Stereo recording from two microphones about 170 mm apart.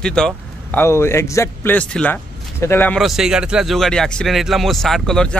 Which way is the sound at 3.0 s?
Centre (ahead or behind).